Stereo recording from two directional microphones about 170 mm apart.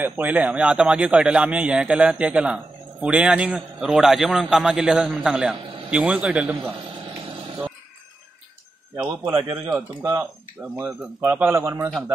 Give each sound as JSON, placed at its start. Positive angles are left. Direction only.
{"t": 0.0, "sound": "speech", "side_deg": -10}
{"t": 9.0, "sound": "speech", "side_deg": -25}